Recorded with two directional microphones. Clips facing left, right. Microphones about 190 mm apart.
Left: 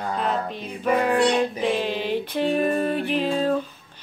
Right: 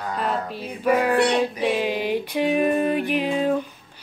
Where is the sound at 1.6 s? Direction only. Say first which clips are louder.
Right 1 dB; 10° right (ahead or behind).